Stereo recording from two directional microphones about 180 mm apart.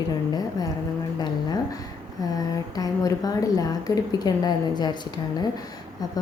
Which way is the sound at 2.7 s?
20° left (ahead or behind).